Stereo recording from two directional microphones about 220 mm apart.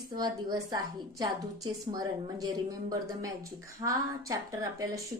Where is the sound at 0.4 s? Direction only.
15° right (ahead or behind).